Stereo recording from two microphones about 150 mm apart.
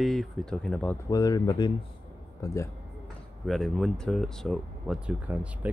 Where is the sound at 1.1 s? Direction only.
25° left (ahead or behind).